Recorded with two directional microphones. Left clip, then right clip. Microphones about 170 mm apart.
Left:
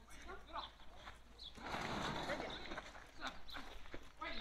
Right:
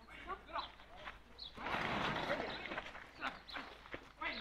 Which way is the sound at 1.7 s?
Centre (ahead or behind).